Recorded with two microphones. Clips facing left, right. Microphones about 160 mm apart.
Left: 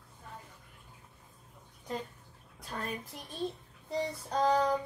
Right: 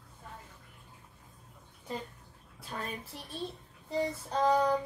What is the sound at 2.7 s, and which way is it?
Speech, 10° right (ahead or behind).